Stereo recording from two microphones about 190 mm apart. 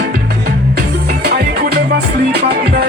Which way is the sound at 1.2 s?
55° right (ahead or behind).